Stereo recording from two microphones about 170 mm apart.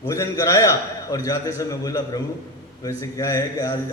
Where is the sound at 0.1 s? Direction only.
20° left (ahead or behind).